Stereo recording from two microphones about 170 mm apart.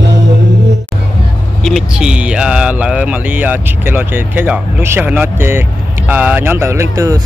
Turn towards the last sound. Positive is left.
turn(degrees=-20)  # may be behind; listen again after turning